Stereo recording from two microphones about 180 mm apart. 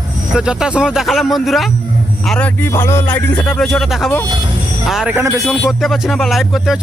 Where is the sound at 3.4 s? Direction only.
5° left (ahead or behind); by 5.5 s 10° right (ahead or behind).